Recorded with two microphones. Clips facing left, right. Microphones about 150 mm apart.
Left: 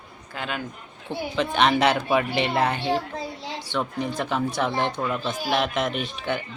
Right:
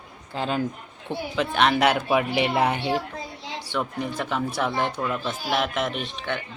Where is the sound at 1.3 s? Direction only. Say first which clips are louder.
Left 1 dB; centre (ahead or behind).